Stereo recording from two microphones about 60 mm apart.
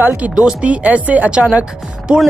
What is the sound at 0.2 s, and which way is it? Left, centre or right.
Speech, centre.